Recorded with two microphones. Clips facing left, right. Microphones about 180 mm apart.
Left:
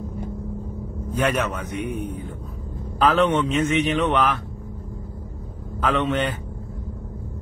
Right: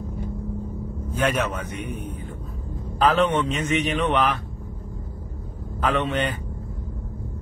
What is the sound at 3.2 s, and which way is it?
A man's voice, 10° right (ahead or behind).